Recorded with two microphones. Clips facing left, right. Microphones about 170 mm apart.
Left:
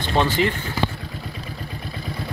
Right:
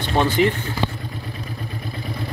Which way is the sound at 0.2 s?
15° right (ahead or behind).